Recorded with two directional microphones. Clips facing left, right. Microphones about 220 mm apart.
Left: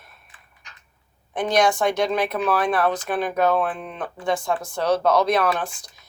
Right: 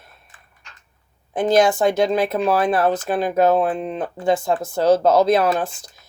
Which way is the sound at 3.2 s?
25° right (ahead or behind).